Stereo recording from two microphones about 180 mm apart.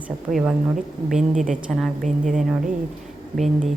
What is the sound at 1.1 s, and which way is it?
Speech, centre (ahead or behind).